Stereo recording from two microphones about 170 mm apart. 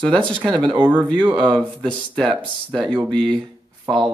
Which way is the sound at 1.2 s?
30° right (ahead or behind).